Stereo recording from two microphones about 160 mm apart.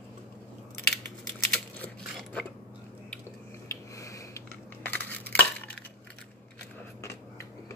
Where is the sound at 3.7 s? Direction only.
20° left (ahead or behind).